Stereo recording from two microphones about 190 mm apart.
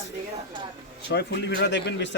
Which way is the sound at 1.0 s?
60° left (ahead or behind).